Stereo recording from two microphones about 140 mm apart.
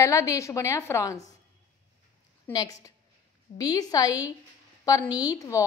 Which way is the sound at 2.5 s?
25° left (ahead or behind).